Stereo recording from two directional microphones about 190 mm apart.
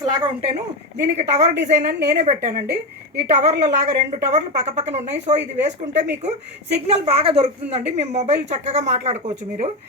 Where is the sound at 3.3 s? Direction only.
35° right (ahead or behind).